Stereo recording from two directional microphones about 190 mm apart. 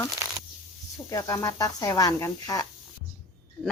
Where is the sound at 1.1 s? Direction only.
15° left (ahead or behind).